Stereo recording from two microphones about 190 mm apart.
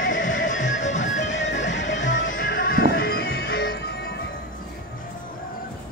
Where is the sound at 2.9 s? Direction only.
55° left (ahead or behind).